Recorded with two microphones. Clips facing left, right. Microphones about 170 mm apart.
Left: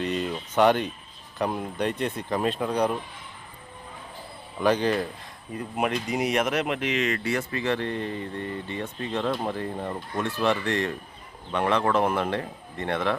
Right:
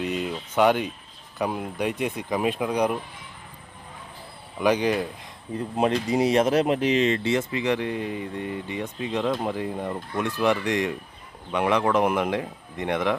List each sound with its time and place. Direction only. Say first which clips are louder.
0.0 s a sound: even; 5° right (ahead or behind)
1.4 s speech: even; 5° right (ahead or behind)
4.5 s speech: right 1 dB; 15° right (ahead or behind)
5.5 s speech: right 4 dB; 30° right (ahead or behind)